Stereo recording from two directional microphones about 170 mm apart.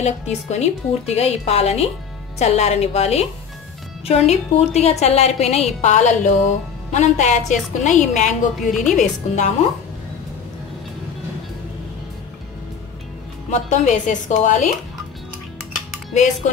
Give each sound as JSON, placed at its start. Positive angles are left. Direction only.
{"t": 0.0, "sound": "a woman's voice", "side_deg": 40}
{"t": 13.5, "sound": "a woman's voice", "side_deg": 45}